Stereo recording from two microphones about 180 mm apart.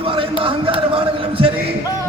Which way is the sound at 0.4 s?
30° right (ahead or behind).